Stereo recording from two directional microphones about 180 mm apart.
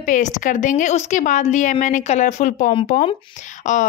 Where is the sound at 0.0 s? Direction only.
45° left (ahead or behind).